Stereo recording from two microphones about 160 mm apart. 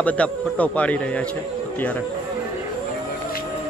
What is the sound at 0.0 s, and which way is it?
Speech, 10° left (ahead or behind).